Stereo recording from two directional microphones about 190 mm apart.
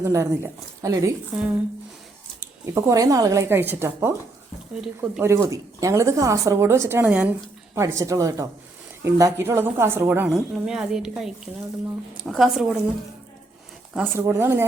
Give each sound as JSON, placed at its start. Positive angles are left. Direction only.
{"t": 0.0, "sound": "speech", "side_deg": -15}
{"t": 1.3, "sound": "a woman's voice", "side_deg": -5}
{"t": 2.6, "sound": "a woman's voice", "side_deg": -15}
{"t": 13.9, "sound": "speech", "side_deg": -10}